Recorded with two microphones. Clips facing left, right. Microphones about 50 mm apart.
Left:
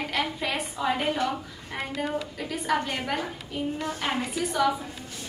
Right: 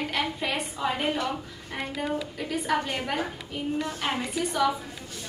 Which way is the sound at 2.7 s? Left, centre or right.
Centre.